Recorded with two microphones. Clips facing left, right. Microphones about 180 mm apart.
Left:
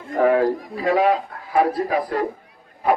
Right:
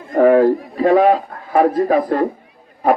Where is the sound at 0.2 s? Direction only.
45° right (ahead or behind).